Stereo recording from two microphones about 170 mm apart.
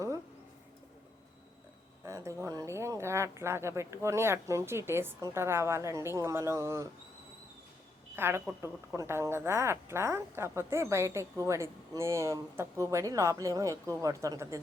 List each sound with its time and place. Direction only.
2.0 s speech: 15° right (ahead or behind)
8.1 s a woman's voice: 15° right (ahead or behind)